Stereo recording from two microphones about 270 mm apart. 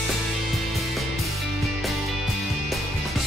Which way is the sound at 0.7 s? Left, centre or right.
Centre.